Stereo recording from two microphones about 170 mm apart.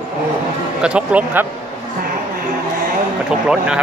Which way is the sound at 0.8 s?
5° right (ahead or behind).